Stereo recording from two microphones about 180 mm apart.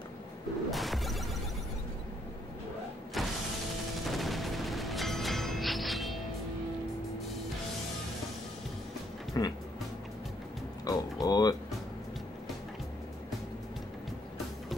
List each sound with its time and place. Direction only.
0.7 s music: centre (ahead or behind)
3.2 s mechanisms: centre (ahead or behind)
4.0 s music: centre (ahead or behind)
9.4 s speech: 20° left (ahead or behind)
10.9 s music: 20° left (ahead or behind)